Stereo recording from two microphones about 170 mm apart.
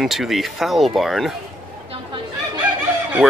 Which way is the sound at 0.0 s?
Centre (ahead or behind).